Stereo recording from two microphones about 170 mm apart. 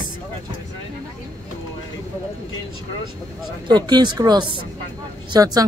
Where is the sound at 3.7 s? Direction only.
25° right (ahead or behind).